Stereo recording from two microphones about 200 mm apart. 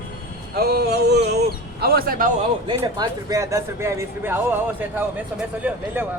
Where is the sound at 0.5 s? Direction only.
50° right (ahead or behind).